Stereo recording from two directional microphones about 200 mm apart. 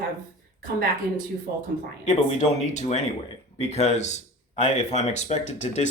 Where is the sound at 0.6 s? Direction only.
45° right (ahead or behind).